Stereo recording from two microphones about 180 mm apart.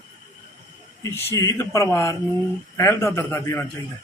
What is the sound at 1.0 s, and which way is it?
A man's voice, 15° left (ahead or behind).